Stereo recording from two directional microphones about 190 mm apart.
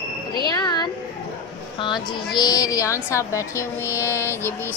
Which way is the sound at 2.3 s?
20° left (ahead or behind).